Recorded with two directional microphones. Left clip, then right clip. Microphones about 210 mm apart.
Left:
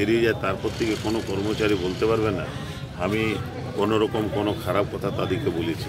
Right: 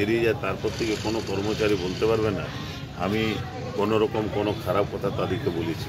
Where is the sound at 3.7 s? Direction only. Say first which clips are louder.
Left 1 dB; 10° left (ahead or behind).